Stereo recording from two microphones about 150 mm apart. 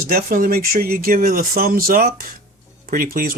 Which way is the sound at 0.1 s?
70° right (ahead or behind).